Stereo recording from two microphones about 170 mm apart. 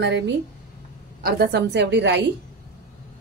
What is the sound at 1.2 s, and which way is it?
A woman's voice, 60° right (ahead or behind).